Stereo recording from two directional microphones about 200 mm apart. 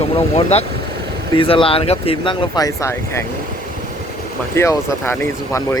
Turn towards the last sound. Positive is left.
turn(degrees=15)  # may be behind; listen again after turning